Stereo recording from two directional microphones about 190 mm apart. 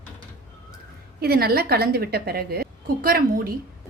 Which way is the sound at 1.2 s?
55° right (ahead or behind).